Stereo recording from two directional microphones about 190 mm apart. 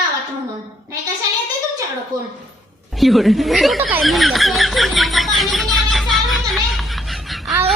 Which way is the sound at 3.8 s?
Centre (ahead or behind).